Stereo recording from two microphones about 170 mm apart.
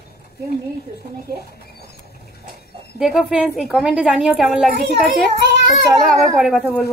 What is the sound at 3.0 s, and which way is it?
Speech, centre (ahead or behind).